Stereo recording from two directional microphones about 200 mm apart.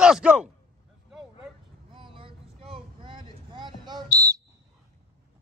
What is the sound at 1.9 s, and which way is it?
Vehicle, 25° right (ahead or behind).